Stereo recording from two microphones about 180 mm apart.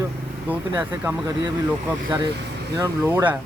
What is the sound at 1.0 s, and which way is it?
Speech, 20° right (ahead or behind).